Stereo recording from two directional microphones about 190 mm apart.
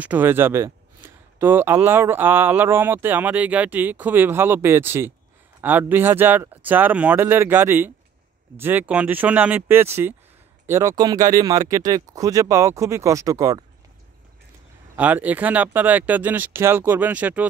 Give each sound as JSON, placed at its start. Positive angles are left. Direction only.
{"t": 0.0, "sound": "speech", "side_deg": -10}
{"t": 15.0, "sound": "speech", "side_deg": -10}